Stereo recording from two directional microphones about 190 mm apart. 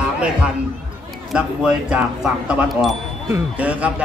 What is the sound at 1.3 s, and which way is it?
A man's voice, 5° right (ahead or behind).